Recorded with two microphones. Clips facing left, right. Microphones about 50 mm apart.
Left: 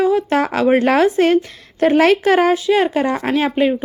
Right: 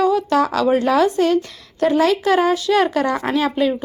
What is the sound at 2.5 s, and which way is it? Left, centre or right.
Speech, centre.